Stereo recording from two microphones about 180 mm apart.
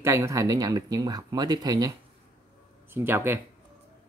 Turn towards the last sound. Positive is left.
turn(degrees=-15)  # may be behind; listen again after turning